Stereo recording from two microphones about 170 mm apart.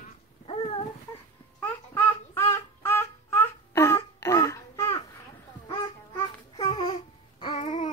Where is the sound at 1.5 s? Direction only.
15° left (ahead or behind).